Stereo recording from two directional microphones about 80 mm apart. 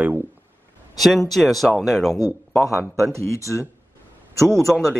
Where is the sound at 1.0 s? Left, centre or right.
Centre.